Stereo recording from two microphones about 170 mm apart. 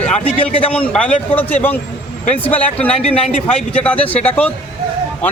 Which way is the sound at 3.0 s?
35° left (ahead or behind).